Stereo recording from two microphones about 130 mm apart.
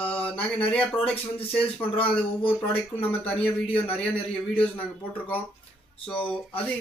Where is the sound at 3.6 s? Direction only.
45° left (ahead or behind).